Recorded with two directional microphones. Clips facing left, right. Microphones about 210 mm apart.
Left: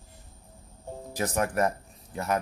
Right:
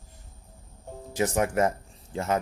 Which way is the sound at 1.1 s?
25° right (ahead or behind).